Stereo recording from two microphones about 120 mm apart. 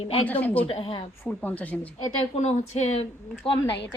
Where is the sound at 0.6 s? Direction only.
50° left (ahead or behind).